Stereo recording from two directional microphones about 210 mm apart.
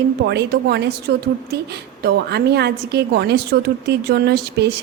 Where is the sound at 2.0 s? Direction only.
50° right (ahead or behind).